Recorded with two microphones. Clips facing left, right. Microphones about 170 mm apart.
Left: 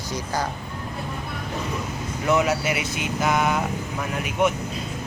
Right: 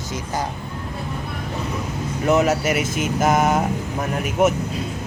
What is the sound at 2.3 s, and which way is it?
Speech, 40° right (ahead or behind).